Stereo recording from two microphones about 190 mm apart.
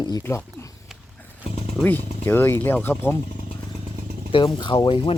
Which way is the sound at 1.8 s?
10° left (ahead or behind).